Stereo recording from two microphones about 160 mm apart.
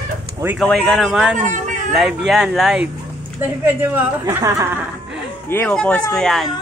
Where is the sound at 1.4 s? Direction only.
50° right (ahead or behind).